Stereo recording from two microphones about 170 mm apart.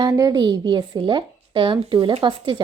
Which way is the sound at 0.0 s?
20° right (ahead or behind).